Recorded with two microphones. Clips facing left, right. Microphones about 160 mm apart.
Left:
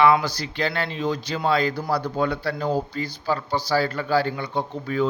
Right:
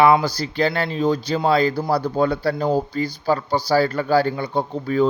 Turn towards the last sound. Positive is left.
turn(degrees=-40)  # may be behind; listen again after turning